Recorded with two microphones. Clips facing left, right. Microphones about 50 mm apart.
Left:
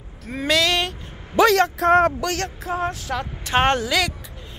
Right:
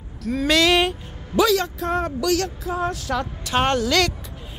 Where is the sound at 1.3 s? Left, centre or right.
Left.